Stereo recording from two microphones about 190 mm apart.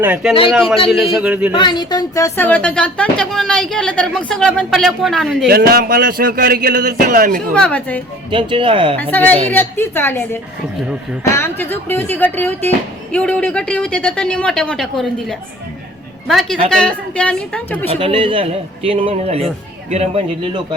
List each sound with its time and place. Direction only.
0.0 s a man's voice: 5° right (ahead or behind)
1.5 s speech: 25° left (ahead or behind); by 5.5 s centre (ahead or behind)
5.5 s speech: 50° right (ahead or behind)
7.5 s speech: 5° left (ahead or behind)
8.3 s speech: 25° right (ahead or behind)
9.0 s speech: 10° left (ahead or behind)
17.8 s speech: 30° right (ahead or behind)